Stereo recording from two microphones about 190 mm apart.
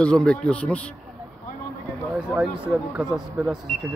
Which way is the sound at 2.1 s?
5° right (ahead or behind).